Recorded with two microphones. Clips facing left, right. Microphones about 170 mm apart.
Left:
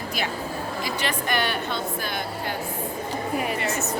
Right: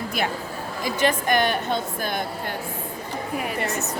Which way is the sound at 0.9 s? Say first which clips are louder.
Right 8 dB; 45° right (ahead or behind).